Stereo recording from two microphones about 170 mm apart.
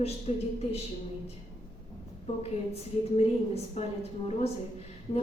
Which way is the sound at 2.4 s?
40° left (ahead or behind).